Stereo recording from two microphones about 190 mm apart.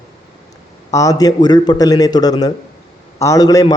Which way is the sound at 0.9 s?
15° left (ahead or behind).